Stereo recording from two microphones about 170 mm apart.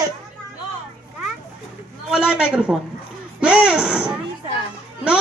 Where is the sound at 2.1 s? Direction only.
5° right (ahead or behind).